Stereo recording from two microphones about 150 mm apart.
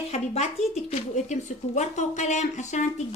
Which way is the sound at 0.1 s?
45° left (ahead or behind).